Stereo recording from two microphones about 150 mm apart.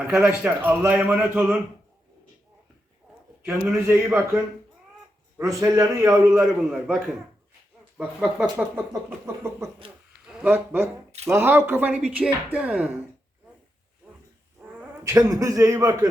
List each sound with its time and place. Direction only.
0.1 s speech: 5° right (ahead or behind)
3.4 s speech: 10° right (ahead or behind)
5.5 s a man's voice: 20° right (ahead or behind)
6.4 s a man's voice: 5° right (ahead or behind)
14.0 s wild animals: 10° right (ahead or behind)
14.6 s a sound: 10° right (ahead or behind)
15.0 s a man's voice: 20° right (ahead or behind)